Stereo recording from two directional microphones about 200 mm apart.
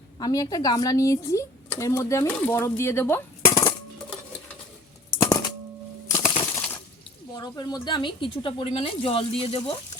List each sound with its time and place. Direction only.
0.2 s speech: 15° left (ahead or behind)
5.1 s typewriter: 15° left (ahead or behind)
6.1 s a sound: 15° left (ahead or behind)
7.3 s speech: 20° left (ahead or behind)